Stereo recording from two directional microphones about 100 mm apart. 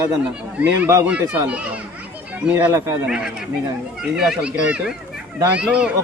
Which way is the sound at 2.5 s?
30° right (ahead or behind).